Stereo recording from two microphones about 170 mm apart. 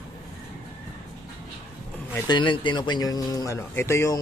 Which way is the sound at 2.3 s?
30° left (ahead or behind).